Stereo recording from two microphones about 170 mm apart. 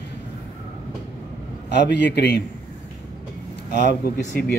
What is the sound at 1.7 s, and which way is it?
Speech, 90° left.